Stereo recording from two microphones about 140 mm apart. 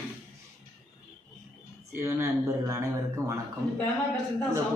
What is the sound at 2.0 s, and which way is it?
Speech, 20° right (ahead or behind).